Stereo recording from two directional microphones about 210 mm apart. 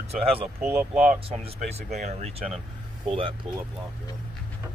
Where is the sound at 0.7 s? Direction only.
5° right (ahead or behind).